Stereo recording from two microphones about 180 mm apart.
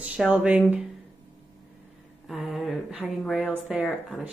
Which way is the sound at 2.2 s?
Centre (ahead or behind).